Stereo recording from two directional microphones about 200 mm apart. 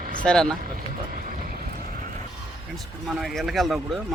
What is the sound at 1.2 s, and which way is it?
Vehicle, 45° right (ahead or behind).